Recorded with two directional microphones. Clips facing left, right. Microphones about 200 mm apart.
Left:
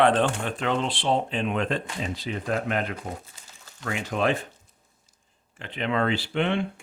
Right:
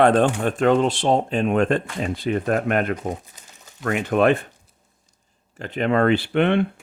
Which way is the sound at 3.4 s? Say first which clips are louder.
Right 3 dB; 20° right (ahead or behind).